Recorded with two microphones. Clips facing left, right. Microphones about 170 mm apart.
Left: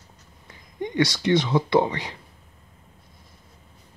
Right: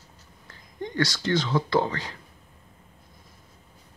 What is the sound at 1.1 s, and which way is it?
Speech, 20° left (ahead or behind).